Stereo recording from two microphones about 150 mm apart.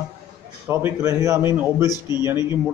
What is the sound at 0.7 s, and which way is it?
A man's voice, 15° right (ahead or behind).